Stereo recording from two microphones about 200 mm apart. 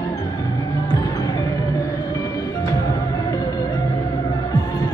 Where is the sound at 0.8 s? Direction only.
20° left (ahead or behind).